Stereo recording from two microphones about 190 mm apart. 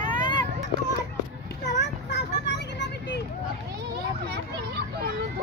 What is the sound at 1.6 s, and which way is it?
Children playing, 65° left (ahead or behind).